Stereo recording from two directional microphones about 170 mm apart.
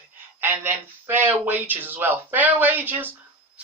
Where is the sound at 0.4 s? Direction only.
10° right (ahead or behind).